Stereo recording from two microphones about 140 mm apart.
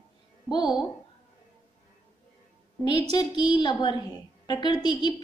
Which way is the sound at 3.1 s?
35° left (ahead or behind).